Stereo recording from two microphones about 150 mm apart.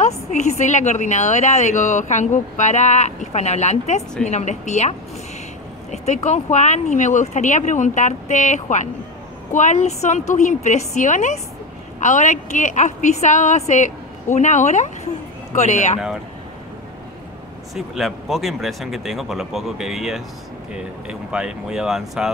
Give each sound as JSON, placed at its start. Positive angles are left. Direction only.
{"t": 0.0, "sound": "a woman's voice", "side_deg": 50}
{"t": 17.7, "sound": "speech", "side_deg": 0}